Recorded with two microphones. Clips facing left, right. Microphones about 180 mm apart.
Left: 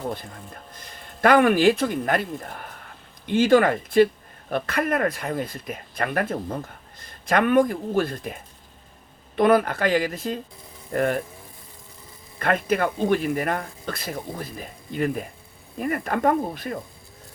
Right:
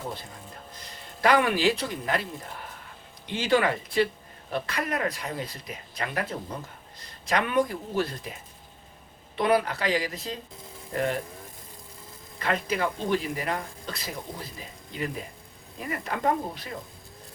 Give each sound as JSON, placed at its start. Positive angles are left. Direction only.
{"t": 1.2, "sound": "speech", "side_deg": 50}
{"t": 12.4, "sound": "speech", "side_deg": 55}